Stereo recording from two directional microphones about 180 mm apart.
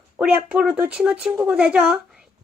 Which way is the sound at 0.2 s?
5° right (ahead or behind).